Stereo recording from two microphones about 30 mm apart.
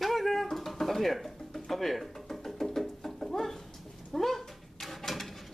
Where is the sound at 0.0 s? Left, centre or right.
Centre.